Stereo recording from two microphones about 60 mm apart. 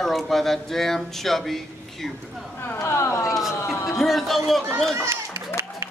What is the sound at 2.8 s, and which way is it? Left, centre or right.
Speech, left.